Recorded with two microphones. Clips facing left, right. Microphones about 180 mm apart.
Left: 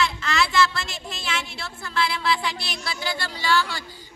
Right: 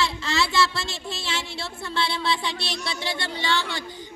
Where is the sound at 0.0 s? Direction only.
30° right (ahead or behind).